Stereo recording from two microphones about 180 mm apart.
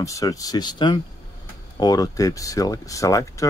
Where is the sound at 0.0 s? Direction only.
20° left (ahead or behind).